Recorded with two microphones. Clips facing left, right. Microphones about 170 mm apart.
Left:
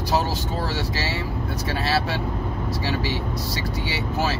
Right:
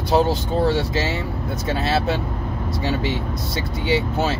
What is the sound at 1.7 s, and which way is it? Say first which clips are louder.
Speech: right 4 dB; 25° right (ahead or behind).